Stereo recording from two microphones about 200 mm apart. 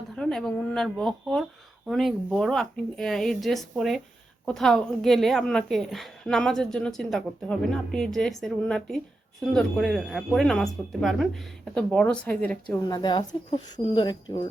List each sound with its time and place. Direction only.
0.2 s a woman's voice: centre (ahead or behind)
12.9 s speech: 20° left (ahead or behind)